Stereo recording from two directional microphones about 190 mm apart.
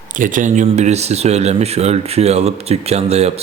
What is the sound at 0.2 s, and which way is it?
A man's voice, 45° right (ahead or behind).